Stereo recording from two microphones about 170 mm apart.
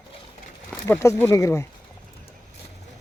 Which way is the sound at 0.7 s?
10° left (ahead or behind).